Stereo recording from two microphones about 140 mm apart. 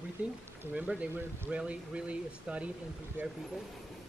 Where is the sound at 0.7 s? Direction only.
10° right (ahead or behind).